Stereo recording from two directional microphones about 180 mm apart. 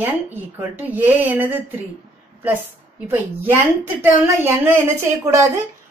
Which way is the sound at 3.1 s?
15° right (ahead or behind).